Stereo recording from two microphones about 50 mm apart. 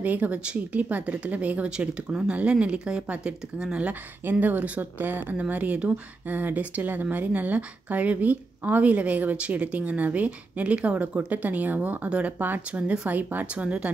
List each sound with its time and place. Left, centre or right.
0.0 s a woman's voice: right
1.8 s a woman's voice: centre
4.2 s a woman's voice: right
12.4 s speech: right
12.7 s a woman's voice: right